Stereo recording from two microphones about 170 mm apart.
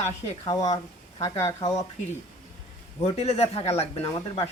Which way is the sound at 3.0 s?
35° left (ahead or behind).